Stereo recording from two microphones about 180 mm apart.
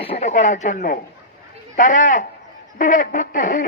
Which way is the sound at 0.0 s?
35° left (ahead or behind).